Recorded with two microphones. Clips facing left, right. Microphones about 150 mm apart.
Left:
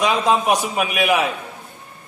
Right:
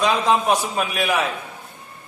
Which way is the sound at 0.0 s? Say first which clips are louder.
Left 1 dB; 15° left (ahead or behind).